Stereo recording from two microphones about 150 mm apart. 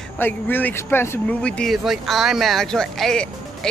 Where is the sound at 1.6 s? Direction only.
Centre (ahead or behind).